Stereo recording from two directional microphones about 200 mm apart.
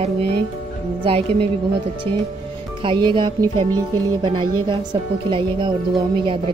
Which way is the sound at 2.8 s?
25° right (ahead or behind).